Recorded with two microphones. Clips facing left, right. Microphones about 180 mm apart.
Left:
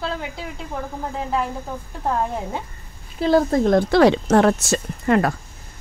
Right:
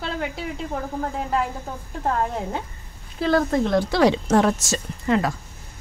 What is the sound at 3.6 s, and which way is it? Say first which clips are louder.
Speech: left 4 dB; 50° left (ahead or behind).